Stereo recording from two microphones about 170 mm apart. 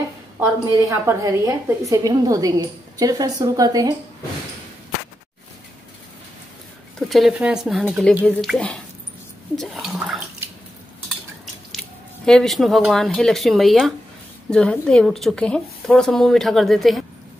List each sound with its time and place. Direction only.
0.4 s a woman's voice: 15° right (ahead or behind)
7.0 s speech: centre (ahead or behind)
8.2 s speech: 10° left (ahead or behind)
9.6 s gargling: centre (ahead or behind)
12.3 s speech: centre (ahead or behind)